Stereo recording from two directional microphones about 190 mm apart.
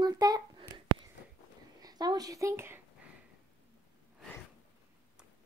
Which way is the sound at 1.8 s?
20° right (ahead or behind).